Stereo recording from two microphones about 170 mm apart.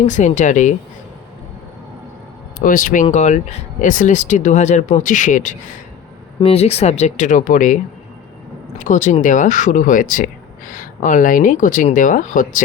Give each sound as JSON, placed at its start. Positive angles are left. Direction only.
{"t": 0.0, "sound": "speech", "side_deg": 45}
{"t": 2.6, "sound": "speech", "side_deg": 55}
{"t": 6.4, "sound": "speech", "side_deg": 35}
{"t": 8.8, "sound": "speech", "side_deg": 45}